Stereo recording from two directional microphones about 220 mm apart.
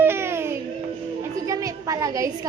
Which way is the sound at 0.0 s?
10° right (ahead or behind).